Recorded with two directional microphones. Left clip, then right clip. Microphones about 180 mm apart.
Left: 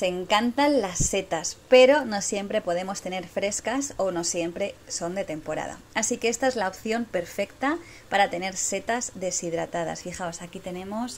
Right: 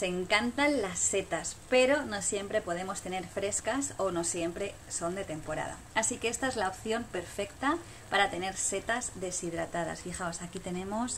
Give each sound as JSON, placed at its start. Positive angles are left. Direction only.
{"t": 0.0, "sound": "a woman's voice", "side_deg": 30}
{"t": 10.8, "sound": "speech", "side_deg": 0}